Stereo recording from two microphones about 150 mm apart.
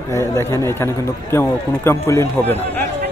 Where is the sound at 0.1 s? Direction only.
20° left (ahead or behind).